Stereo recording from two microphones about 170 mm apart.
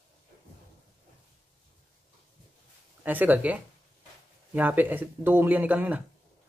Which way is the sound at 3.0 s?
10° right (ahead or behind).